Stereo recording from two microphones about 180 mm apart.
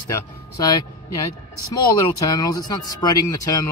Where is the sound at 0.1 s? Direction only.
20° left (ahead or behind).